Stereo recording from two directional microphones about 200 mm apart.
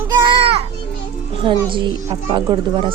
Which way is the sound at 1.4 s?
25° right (ahead or behind).